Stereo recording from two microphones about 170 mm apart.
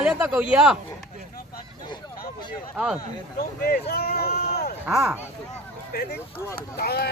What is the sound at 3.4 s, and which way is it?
Speech, 65° left (ahead or behind).